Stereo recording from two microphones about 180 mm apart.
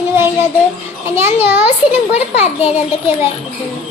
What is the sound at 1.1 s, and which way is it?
Speech, 10° right (ahead or behind).